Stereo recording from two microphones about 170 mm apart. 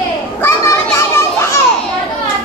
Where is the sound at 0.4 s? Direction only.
15° left (ahead or behind).